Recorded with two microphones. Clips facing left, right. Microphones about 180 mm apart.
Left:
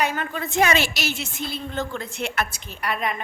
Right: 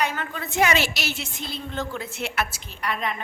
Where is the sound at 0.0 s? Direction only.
10° left (ahead or behind).